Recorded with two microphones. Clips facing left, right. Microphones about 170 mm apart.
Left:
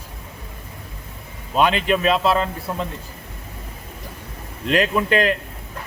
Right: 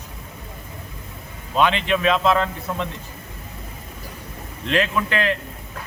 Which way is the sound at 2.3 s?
35° left (ahead or behind).